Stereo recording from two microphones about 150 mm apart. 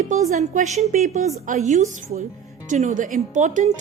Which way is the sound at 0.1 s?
60° right (ahead or behind).